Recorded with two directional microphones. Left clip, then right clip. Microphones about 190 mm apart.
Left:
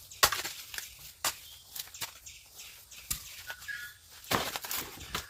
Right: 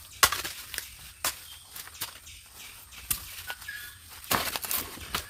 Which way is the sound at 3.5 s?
15° right (ahead or behind).